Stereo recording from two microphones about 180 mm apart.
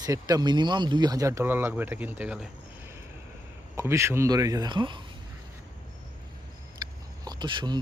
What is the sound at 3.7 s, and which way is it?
Speech, 15° right (ahead or behind).